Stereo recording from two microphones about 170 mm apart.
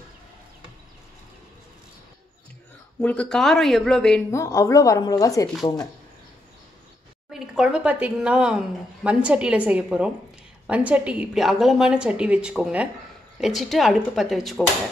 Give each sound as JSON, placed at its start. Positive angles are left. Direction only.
{"t": 3.0, "sound": "speech", "side_deg": 5}
{"t": 4.3, "sound": "speech", "side_deg": 15}
{"t": 7.2, "sound": "a woman's voice", "side_deg": -5}